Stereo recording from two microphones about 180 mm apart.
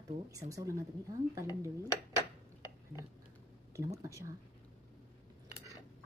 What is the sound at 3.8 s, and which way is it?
Speech, 15° right (ahead or behind).